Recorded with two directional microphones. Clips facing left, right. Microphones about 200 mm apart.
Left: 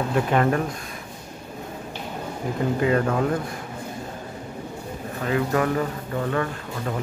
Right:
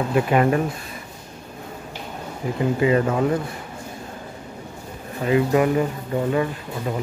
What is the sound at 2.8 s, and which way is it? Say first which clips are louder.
Speech: right 3 dB; 5° right (ahead or behind).